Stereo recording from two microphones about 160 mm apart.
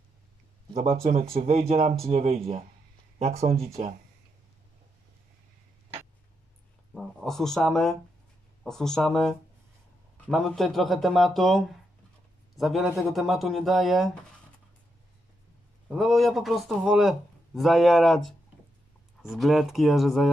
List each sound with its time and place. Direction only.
1.3 s speech: 40° right (ahead or behind)
6.9 s a sound: centre (ahead or behind)
8.6 s speech: 5° left (ahead or behind)
15.9 s speech: centre (ahead or behind)